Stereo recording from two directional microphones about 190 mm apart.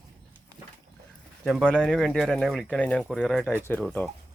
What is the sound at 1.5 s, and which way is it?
Speech, centre (ahead or behind).